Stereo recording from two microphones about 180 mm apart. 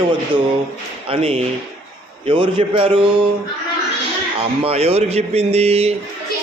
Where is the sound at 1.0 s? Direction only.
30° right (ahead or behind).